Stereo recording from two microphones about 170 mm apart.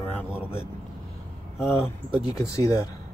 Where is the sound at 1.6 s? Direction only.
5° right (ahead or behind).